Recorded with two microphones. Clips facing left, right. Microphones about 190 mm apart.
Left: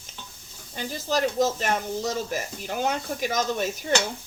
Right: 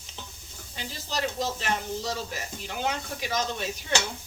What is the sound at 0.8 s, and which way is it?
Speech, 50° left (ahead or behind).